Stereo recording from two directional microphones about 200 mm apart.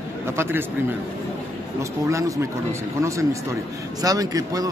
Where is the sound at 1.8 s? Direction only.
15° right (ahead or behind).